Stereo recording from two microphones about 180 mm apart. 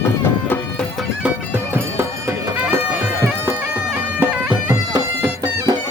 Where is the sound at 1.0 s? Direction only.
10° right (ahead or behind).